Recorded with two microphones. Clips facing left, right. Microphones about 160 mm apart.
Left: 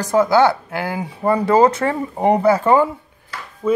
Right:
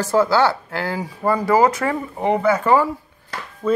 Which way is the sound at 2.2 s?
35° left (ahead or behind).